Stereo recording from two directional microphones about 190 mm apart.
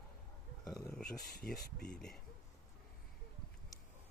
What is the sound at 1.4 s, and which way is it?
Speech, 5° left (ahead or behind).